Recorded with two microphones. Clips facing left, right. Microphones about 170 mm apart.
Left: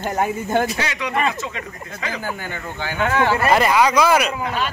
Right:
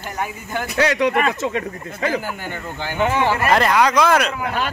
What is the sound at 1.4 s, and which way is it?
Speech, 55° right (ahead or behind).